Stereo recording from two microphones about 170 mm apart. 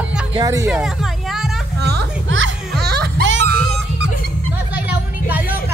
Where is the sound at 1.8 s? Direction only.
80° right.